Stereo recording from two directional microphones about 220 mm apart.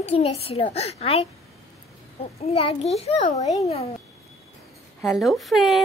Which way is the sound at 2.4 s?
30° left (ahead or behind).